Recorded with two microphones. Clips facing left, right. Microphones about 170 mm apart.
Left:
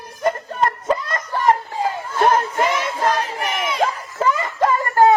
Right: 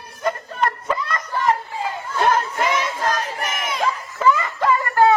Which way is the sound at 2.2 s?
45° left (ahead or behind).